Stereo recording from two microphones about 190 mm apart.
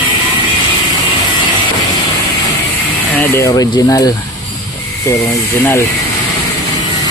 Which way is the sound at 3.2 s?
15° left (ahead or behind).